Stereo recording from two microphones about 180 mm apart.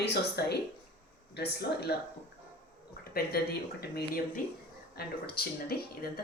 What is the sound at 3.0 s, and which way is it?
Speech, 60° left (ahead or behind).